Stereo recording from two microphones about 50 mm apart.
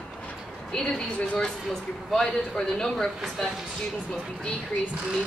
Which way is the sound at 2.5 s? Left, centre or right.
Centre.